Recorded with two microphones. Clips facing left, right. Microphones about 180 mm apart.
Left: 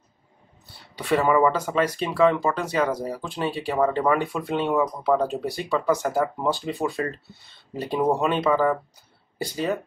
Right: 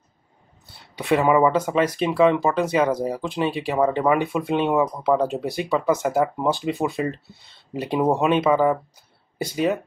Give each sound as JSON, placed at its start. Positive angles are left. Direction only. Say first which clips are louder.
{"t": 0.9, "sound": "speech", "louder": "right 2 dB", "side_deg": -15}